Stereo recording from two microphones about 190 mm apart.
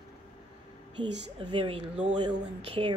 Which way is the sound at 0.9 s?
25° right (ahead or behind).